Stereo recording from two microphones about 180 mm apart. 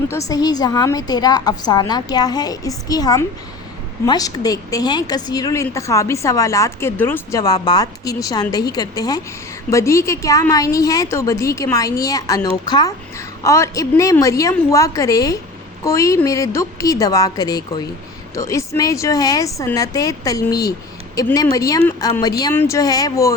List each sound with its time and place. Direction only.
0.1 s a woman's voice: 20° left (ahead or behind)